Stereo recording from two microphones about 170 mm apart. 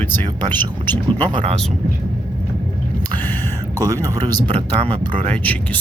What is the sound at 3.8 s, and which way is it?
Speech, 20° right (ahead or behind).